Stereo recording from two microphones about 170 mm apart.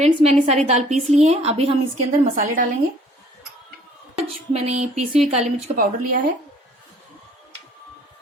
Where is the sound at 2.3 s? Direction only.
50° right (ahead or behind).